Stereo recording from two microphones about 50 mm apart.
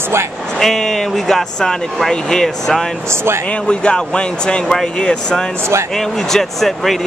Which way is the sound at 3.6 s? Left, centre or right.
Centre.